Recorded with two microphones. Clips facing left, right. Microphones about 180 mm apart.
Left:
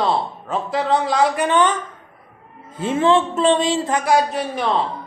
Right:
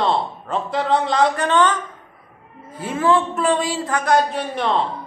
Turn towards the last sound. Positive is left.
turn(degrees=5)  # may be behind; listen again after turning